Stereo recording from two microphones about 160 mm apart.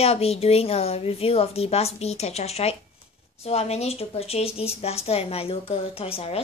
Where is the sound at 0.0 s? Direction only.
40° left (ahead or behind).